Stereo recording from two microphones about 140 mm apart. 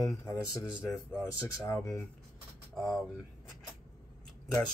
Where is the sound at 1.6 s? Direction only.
20° left (ahead or behind).